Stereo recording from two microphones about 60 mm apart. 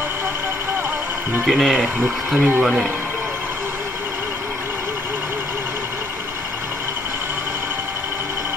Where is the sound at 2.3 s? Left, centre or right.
Right.